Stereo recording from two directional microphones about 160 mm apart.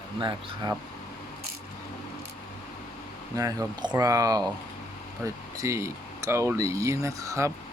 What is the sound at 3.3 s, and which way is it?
Speech, 20° right (ahead or behind).